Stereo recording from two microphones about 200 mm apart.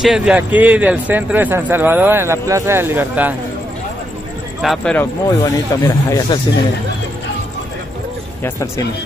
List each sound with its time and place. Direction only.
0.0 s speech: 5° right (ahead or behind)
4.6 s speech: centre (ahead or behind)
5.2 s speech: 15° left (ahead or behind)
8.5 s speech: 15° left (ahead or behind)